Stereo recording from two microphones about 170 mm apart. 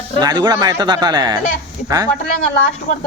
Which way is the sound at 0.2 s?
25° right (ahead or behind).